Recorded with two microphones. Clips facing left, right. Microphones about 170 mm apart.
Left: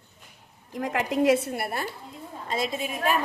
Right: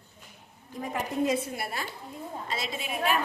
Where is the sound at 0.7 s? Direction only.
90° left.